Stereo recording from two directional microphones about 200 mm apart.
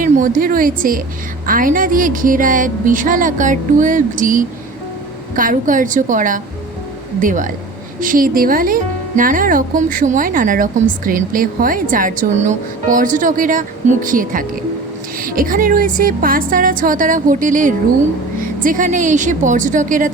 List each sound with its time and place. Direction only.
0.0 s speech: 40° right (ahead or behind)
1.5 s music: 45° right (ahead or behind)
8.0 s speech: 45° right (ahead or behind)
18.3 s music: 40° right (ahead or behind)